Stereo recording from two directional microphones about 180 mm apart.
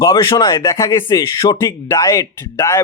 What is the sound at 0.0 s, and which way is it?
Speech, 20° left (ahead or behind).